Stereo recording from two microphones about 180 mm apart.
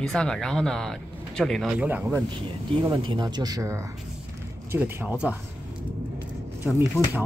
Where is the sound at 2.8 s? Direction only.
25° right (ahead or behind).